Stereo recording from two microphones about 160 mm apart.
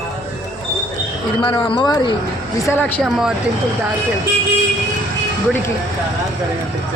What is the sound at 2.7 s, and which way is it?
Speech, 10° left (ahead or behind).